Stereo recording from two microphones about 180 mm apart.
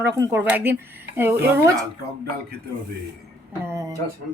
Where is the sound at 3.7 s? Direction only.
20° right (ahead or behind).